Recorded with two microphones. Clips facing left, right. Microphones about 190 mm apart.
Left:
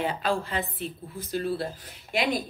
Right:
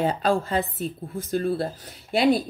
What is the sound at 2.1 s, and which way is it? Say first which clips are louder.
Speech: right 7 dB; 35° right (ahead or behind).